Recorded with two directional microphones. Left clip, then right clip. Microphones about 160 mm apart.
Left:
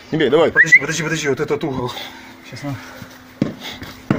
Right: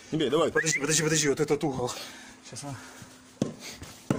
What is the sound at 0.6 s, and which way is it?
Speech, 90° right.